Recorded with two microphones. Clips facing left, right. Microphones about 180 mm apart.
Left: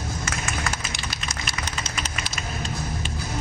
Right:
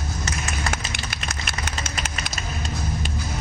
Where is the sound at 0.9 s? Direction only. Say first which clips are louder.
Right 1 dB; 55° right (ahead or behind).